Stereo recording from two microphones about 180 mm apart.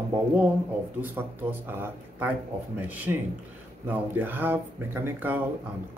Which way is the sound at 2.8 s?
10° right (ahead or behind).